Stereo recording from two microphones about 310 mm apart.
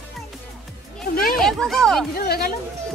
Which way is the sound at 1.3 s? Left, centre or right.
Centre.